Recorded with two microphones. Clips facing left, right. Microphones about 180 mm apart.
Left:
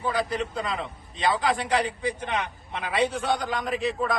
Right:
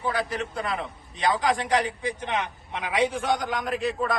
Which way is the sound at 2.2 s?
15° right (ahead or behind).